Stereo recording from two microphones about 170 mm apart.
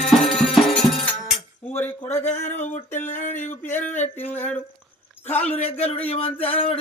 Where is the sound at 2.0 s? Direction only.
15° left (ahead or behind).